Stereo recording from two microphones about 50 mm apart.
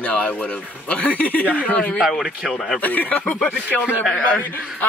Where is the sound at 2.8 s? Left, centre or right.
Left.